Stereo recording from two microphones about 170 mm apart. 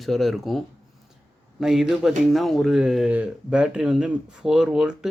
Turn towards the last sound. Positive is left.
turn(degrees=-5)  # may be behind; listen again after turning